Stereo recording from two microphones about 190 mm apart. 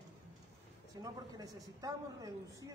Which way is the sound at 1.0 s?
20° right (ahead or behind).